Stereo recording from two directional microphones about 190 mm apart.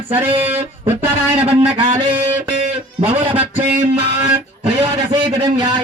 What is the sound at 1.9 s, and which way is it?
Mantra, 25° right (ahead or behind).